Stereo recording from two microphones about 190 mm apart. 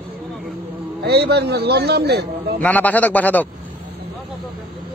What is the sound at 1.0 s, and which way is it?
A man's voice, 60° right (ahead or behind).